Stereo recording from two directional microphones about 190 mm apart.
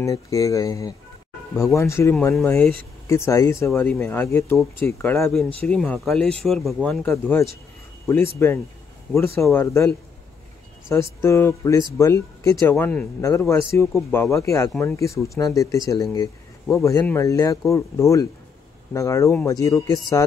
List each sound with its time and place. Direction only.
0.0 s speech: 15° left (ahead or behind)
5.7 s speech: 5° left (ahead or behind)
11.1 s speech: 15° left (ahead or behind)